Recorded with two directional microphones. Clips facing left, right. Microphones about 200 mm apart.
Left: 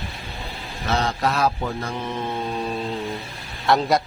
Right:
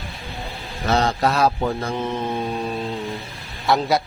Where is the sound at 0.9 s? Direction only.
35° right (ahead or behind).